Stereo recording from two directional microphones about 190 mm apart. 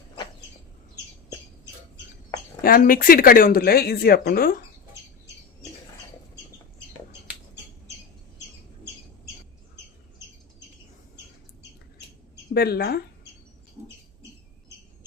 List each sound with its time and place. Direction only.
2.6 s speech: 50° left (ahead or behind)
12.5 s speech: 55° left (ahead or behind)